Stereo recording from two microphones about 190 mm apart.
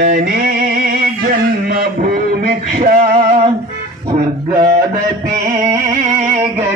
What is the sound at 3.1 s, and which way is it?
Music, 35° right (ahead or behind).